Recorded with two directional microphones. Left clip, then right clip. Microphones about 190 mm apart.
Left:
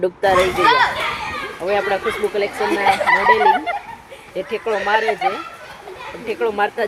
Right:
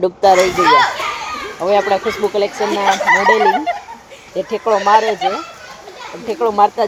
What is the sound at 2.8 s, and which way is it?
Speech, centre (ahead or behind).